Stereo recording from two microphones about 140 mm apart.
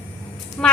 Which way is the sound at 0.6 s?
5° left (ahead or behind).